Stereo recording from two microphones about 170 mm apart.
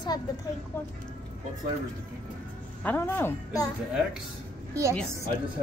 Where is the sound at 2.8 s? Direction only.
10° left (ahead or behind).